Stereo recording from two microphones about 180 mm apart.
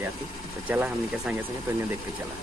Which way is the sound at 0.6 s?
10° right (ahead or behind).